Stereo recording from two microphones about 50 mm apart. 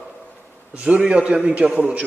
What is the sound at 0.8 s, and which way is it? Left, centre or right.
A man's voice, right.